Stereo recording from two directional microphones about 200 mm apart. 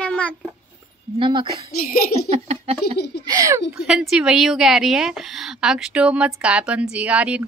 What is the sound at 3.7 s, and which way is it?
A woman's voice, 5° right (ahead or behind).